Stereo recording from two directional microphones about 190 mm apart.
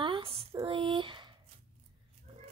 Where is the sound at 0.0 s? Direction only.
25° right (ahead or behind).